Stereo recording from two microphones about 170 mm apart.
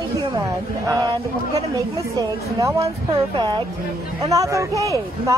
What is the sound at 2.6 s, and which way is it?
Speech, 20° right (ahead or behind).